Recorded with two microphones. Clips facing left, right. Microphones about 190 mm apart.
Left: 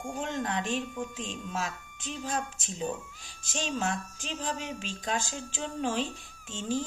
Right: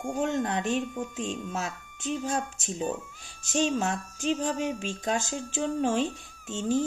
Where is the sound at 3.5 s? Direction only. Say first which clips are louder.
Right 5 dB; 45° right (ahead or behind).